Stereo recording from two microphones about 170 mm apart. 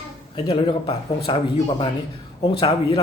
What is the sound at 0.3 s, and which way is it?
Speech, 30° left (ahead or behind).